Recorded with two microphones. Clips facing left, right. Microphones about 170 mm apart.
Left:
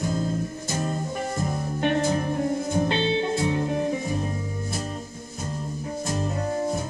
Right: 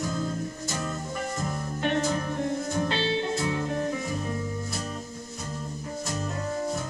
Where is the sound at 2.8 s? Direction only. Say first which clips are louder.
Left 4 dB; 20° left (ahead or behind).